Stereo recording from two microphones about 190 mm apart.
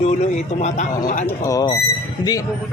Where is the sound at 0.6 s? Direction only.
40° left (ahead or behind).